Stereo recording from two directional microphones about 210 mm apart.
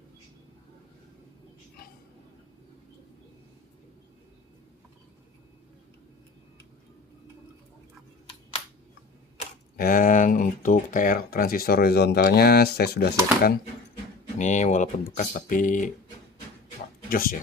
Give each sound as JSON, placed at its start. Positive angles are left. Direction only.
{"t": 9.7, "sound": "speech", "side_deg": 40}
{"t": 14.3, "sound": "speech", "side_deg": 35}
{"t": 17.1, "sound": "speech", "side_deg": 45}